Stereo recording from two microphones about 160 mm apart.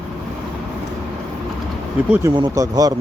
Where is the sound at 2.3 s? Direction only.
25° right (ahead or behind).